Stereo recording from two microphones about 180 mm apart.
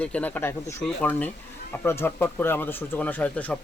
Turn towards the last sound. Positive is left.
turn(degrees=10)  # may be behind; listen again after turning